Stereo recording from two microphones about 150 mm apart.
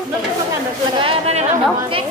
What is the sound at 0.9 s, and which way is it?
A woman's voice, 40° right (ahead or behind).